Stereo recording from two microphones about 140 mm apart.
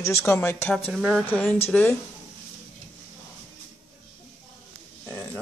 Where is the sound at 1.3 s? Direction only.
15° left (ahead or behind).